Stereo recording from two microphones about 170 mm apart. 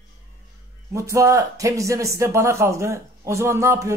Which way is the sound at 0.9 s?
15° right (ahead or behind).